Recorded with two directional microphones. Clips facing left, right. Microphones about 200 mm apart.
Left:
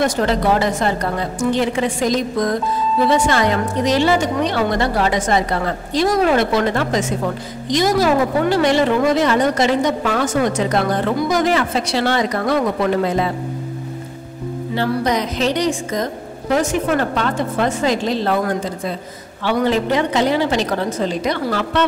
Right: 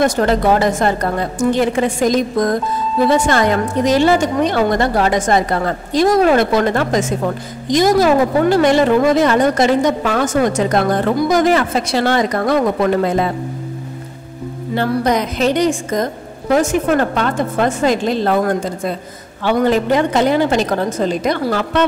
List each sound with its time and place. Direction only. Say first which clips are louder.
0.0 s a woman's voice: right 3 dB; 50° right (ahead or behind)
14.8 s a woman's voice: right 3 dB; 50° right (ahead or behind)